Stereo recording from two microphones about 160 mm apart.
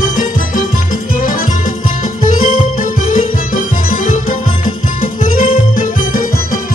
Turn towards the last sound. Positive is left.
turn(degrees=60)  # may be behind; listen again after turning